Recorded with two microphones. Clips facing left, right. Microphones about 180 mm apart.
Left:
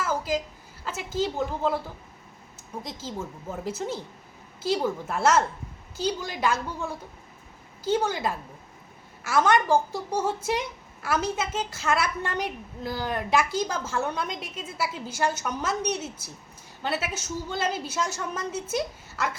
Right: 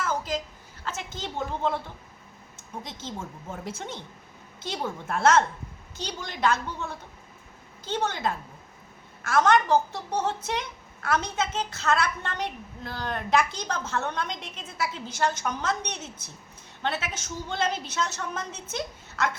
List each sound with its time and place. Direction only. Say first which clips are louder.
0.0 s a sound: left 2 dB; 10° left (ahead or behind)
0.9 s a woman's voice: left 7 dB; 5° left (ahead or behind)
3.6 s a woman's voice: left 7 dB; 5° left (ahead or behind)